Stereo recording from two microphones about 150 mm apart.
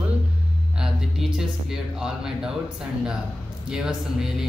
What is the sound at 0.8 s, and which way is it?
Speech, 5° right (ahead or behind).